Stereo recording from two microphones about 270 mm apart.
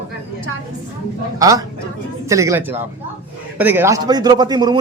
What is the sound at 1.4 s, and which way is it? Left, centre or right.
A man's voice, centre.